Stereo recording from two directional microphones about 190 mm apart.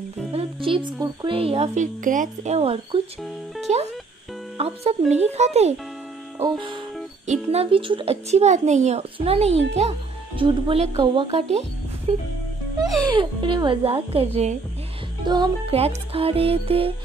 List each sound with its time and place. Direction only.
0.3 s a woman's voice: 30° right (ahead or behind)
6.4 s a woman's voice: 25° right (ahead or behind)
12.8 s speech: 20° right (ahead or behind)
15.2 s a woman's voice: 20° right (ahead or behind)